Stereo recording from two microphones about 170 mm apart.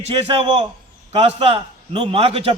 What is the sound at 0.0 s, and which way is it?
A man's voice, 35° right (ahead or behind).